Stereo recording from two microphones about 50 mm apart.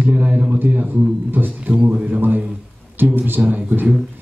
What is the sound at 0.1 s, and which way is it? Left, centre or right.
A man's voice, right.